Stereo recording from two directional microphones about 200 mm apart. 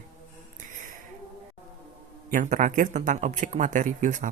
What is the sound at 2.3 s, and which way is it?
Speech, 40° right (ahead or behind).